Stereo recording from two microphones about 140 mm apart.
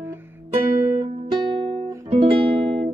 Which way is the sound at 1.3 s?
35° right (ahead or behind).